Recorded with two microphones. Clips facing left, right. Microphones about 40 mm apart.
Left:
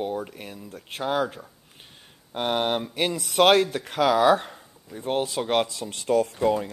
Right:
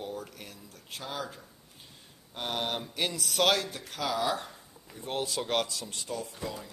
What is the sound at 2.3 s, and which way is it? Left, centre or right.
Speech, left.